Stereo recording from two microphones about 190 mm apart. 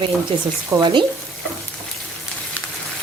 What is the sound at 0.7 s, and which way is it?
Speech, 25° right (ahead or behind).